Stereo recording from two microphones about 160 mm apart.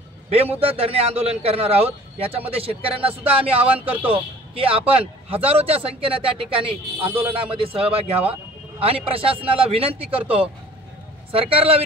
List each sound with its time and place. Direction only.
0.3 s a man's voice: 40° right (ahead or behind)
11.3 s a man's voice: 35° right (ahead or behind)